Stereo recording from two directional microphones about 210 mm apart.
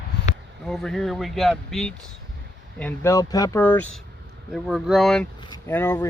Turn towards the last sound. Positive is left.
turn(degrees=10)  # may be behind; listen again after turning